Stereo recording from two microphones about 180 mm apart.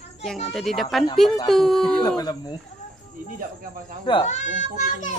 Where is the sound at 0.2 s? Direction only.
Centre (ahead or behind).